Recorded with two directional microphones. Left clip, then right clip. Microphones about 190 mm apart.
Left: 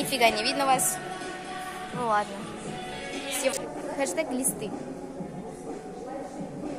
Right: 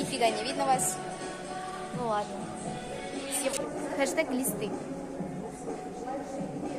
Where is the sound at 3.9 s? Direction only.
15° left (ahead or behind).